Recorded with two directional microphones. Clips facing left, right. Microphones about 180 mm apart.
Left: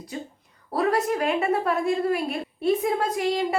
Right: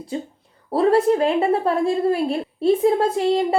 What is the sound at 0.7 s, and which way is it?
A woman's voice, 30° right (ahead or behind).